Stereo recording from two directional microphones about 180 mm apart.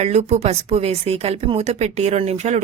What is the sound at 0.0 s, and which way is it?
A woman's voice, 40° right (ahead or behind).